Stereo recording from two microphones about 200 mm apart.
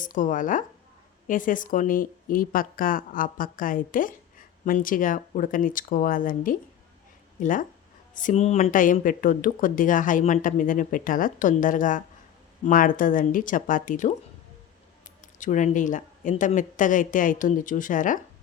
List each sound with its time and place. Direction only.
0.0 s a woman's voice: 40° left (ahead or behind)
15.4 s speech: 40° left (ahead or behind)